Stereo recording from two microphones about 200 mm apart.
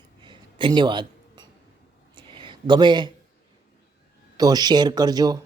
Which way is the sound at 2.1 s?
25° right (ahead or behind).